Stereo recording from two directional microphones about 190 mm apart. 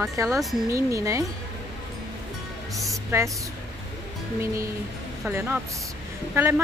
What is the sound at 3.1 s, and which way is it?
Speech, 15° right (ahead or behind).